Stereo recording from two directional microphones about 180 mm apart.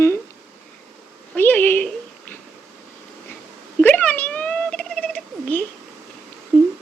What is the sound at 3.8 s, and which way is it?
Cat, 10° left (ahead or behind).